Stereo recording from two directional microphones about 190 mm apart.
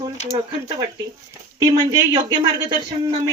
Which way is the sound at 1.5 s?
20° right (ahead or behind).